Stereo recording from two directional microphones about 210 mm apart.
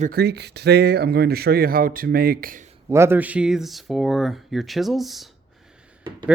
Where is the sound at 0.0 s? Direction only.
45° right (ahead or behind).